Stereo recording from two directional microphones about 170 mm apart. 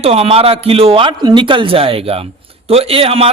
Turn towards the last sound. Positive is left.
turn(degrees=-35)  # may be behind; listen again after turning